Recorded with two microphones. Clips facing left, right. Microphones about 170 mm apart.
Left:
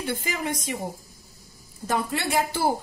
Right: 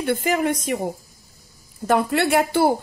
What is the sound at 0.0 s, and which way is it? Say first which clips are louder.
Speech: right 8 dB; 55° right (ahead or behind).